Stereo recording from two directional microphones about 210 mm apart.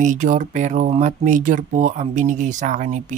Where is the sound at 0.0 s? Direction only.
35° right (ahead or behind).